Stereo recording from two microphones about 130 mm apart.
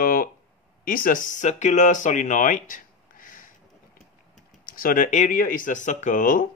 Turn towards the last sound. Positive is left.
turn(degrees=90)